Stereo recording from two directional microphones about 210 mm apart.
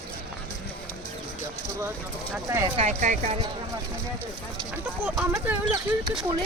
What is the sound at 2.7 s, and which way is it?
Speech, 35° right (ahead or behind).